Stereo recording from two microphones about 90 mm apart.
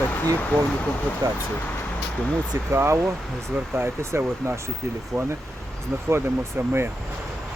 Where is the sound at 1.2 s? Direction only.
55° right (ahead or behind).